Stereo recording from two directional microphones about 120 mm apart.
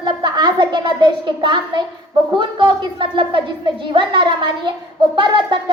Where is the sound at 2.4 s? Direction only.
40° right (ahead or behind).